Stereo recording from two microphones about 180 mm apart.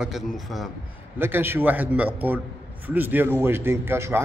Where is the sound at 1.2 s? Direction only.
10° right (ahead or behind).